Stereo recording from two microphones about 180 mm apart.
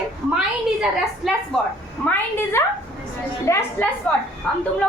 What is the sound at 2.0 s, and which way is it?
A woman's voice, 10° left (ahead or behind).